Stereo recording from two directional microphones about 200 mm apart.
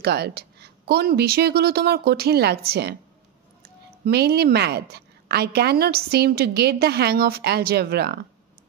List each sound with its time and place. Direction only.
0.0 s a woman's voice: 55° right (ahead or behind)
4.0 s a woman's voice: 55° right (ahead or behind)